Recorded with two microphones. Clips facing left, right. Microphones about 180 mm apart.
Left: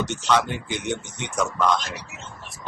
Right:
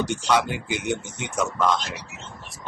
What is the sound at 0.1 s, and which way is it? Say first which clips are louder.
Speech: even; 10° right (ahead or behind).